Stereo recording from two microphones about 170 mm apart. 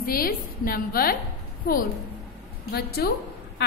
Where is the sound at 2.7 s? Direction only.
65° left (ahead or behind).